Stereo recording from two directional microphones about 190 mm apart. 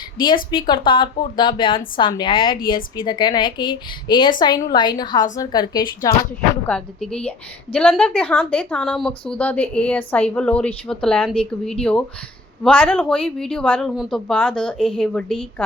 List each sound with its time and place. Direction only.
0.5 s a woman's voice: 25° left (ahead or behind)
6.7 s a woman's voice: 5° left (ahead or behind)